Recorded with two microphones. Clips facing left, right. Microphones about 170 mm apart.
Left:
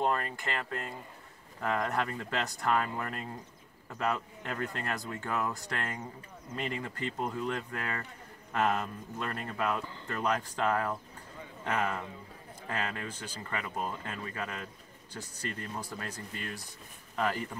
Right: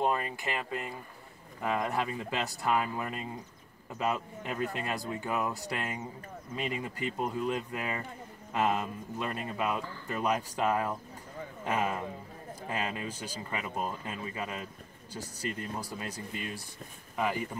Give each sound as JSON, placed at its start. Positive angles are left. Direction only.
{"t": 0.0, "sound": "speech", "side_deg": -10}
{"t": 15.9, "sound": "speech", "side_deg": -15}